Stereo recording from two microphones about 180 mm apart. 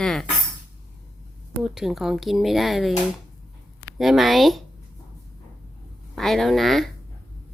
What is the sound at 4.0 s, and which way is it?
Speech, centre (ahead or behind).